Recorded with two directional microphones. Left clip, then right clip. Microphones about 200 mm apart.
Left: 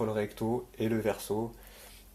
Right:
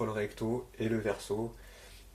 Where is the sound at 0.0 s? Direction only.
40° left (ahead or behind).